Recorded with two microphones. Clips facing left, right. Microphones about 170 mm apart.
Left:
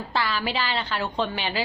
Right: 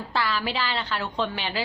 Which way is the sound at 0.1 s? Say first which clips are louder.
Even; centre (ahead or behind).